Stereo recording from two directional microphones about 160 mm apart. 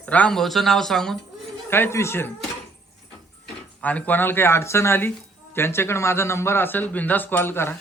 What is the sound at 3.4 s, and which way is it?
Speech, 10° left (ahead or behind).